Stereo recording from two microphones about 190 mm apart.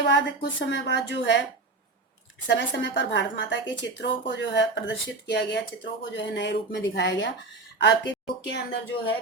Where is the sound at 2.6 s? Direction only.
70° left (ahead or behind).